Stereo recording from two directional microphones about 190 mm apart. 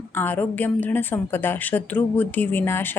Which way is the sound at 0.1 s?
10° left (ahead or behind).